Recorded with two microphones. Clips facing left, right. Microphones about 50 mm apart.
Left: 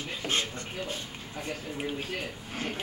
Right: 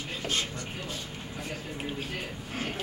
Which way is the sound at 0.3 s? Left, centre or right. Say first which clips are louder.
Left 2 dB; left.